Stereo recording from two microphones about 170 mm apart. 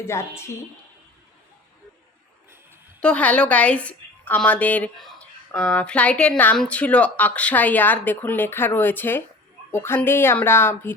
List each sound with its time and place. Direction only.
0.0 s speech: 15° left (ahead or behind)
3.0 s a woman's voice: 10° left (ahead or behind)